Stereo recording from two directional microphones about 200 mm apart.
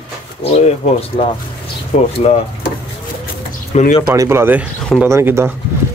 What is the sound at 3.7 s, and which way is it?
Speech, 35° left (ahead or behind).